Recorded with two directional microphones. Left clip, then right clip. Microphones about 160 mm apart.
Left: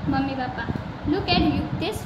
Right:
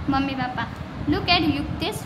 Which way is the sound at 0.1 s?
40° right (ahead or behind).